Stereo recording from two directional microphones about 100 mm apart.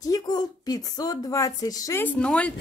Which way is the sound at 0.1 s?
40° left (ahead or behind).